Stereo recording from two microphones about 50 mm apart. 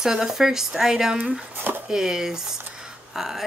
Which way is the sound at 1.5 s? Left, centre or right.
Right.